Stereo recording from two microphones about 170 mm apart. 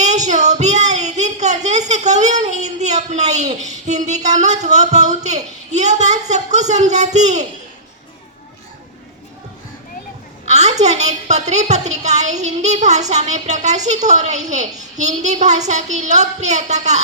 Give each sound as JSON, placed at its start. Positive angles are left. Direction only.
{"t": 0.0, "sound": "child singing", "side_deg": -45}
{"t": 3.7, "sound": "a woman's voice", "side_deg": -45}
{"t": 10.4, "sound": "a woman's voice", "side_deg": -40}